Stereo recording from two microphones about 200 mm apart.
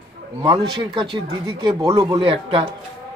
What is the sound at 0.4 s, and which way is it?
Speech, 25° right (ahead or behind).